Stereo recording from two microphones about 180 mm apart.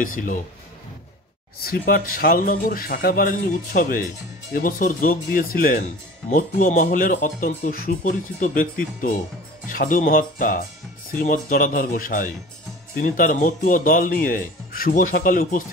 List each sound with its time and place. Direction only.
0.0 s speech: 50° left (ahead or behind)
1.6 s speech: 55° left (ahead or behind)